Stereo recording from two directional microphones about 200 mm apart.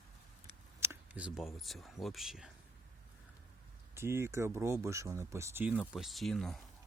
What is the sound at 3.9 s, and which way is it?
Speech, 10° right (ahead or behind).